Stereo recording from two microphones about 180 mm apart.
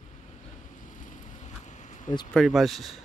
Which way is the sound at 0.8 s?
45° left (ahead or behind).